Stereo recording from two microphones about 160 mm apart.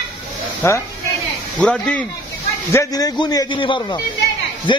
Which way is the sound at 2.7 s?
25° left (ahead or behind).